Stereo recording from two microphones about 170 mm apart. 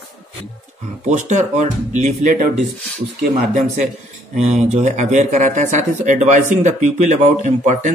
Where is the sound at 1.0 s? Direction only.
45° right (ahead or behind).